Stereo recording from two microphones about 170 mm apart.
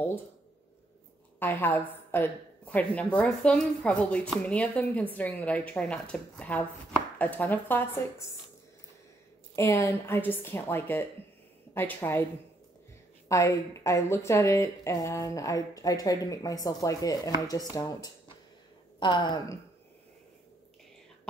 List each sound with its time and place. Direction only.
1.4 s a woman's voice: 10° left (ahead or behind)
9.6 s a woman's voice: 15° left (ahead or behind)
13.3 s a woman's voice: 20° left (ahead or behind)